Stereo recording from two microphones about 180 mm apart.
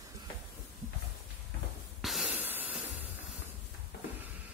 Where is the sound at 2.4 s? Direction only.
10° right (ahead or behind).